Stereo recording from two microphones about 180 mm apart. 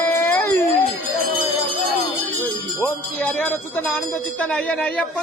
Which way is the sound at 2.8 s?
10° left (ahead or behind).